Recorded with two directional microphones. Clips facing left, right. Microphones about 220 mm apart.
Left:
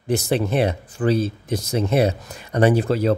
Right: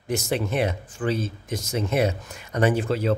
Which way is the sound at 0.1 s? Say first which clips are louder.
Left 5 dB; 35° left (ahead or behind).